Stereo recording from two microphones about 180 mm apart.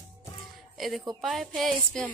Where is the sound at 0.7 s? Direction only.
Centre (ahead or behind).